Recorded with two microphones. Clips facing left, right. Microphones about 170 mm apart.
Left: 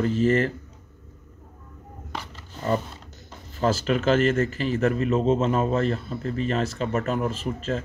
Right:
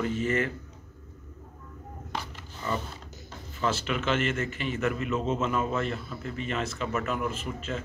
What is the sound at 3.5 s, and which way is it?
A man's voice, 40° left (ahead or behind).